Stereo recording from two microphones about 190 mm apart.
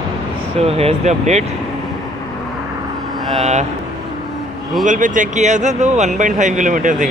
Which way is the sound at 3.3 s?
35° right (ahead or behind).